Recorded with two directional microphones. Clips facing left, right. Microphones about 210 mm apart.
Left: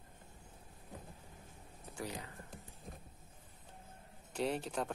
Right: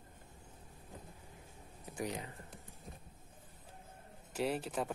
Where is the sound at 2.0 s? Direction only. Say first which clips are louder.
Right 4 dB; 20° right (ahead or behind).